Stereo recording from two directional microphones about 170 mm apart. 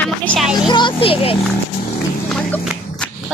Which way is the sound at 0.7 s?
30° left (ahead or behind).